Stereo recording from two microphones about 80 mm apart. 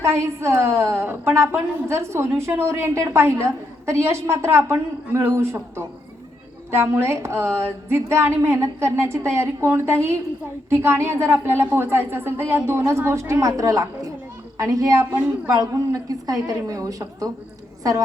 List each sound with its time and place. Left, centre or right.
0.0 s speech: right
6.7 s a woman's voice: right